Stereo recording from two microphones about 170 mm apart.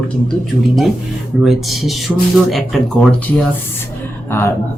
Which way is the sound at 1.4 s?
Centre (ahead or behind).